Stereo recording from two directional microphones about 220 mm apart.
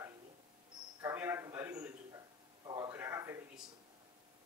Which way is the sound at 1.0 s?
10° right (ahead or behind).